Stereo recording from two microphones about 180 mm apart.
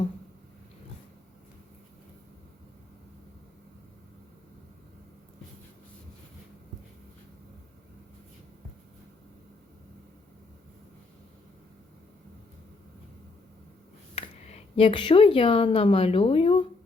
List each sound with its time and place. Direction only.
14.2 s speech: 35° left (ahead or behind)